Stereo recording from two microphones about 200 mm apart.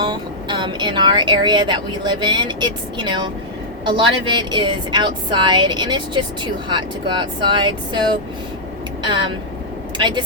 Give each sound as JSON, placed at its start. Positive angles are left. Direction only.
{"t": 0.0, "sound": "speech", "side_deg": -25}
{"t": 9.0, "sound": "speech", "side_deg": -25}